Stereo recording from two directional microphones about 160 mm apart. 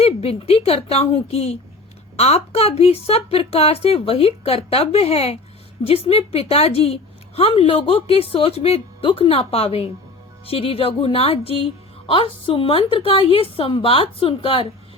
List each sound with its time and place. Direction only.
0.0 s a woman's voice: 40° left (ahead or behind)